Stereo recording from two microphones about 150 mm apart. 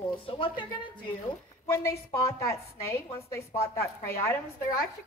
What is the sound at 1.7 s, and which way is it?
A woman's voice, 15° left (ahead or behind).